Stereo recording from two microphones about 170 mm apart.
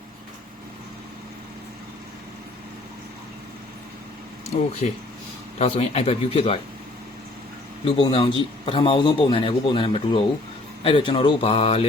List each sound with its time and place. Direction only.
4.8 s a man's voice: 45° left (ahead or behind)
7.9 s a man's voice: 30° left (ahead or behind)